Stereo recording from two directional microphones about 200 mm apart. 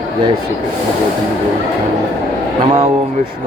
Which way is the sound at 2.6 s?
30° right (ahead or behind).